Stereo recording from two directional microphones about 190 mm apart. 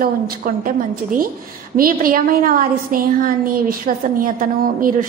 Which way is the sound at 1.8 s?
50° right (ahead or behind).